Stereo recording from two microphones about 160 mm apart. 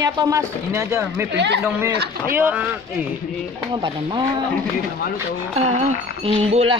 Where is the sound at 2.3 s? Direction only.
10° right (ahead or behind).